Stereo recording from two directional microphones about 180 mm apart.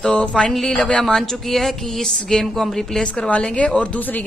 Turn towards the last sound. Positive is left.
turn(degrees=10)  # may be behind; listen again after turning